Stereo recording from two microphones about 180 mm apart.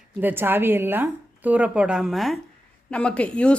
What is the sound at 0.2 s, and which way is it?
Speech, 10° right (ahead or behind).